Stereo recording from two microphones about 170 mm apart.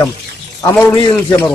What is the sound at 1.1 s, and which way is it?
Speech, 10° left (ahead or behind).